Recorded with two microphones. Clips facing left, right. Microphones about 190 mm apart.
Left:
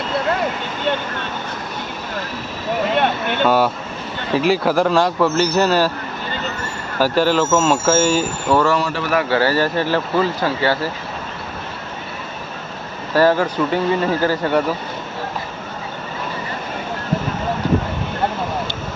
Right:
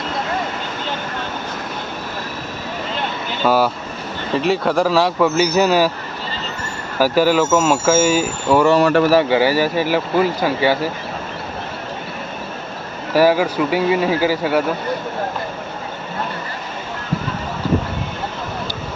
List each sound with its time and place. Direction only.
2.9 s vehicle: 65° left (ahead or behind)
3.4 s a man's voice: centre (ahead or behind)
7.0 s speech: 10° right (ahead or behind)
8.8 s speech: 60° right (ahead or behind)
9.3 s speech: 15° right (ahead or behind)
13.1 s speech: 10° right (ahead or behind)